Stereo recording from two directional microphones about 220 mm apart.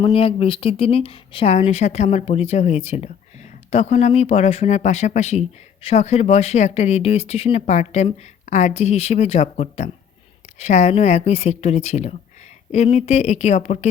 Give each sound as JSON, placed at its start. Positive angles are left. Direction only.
{"t": 0.0, "sound": "speech", "side_deg": 25}